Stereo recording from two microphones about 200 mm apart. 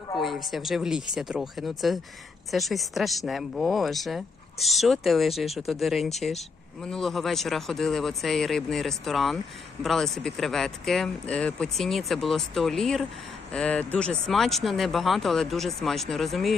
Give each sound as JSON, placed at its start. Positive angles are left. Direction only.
{"t": 0.2, "sound": "speech", "side_deg": 0}